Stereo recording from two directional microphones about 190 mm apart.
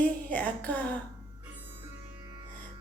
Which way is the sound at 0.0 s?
5° left (ahead or behind).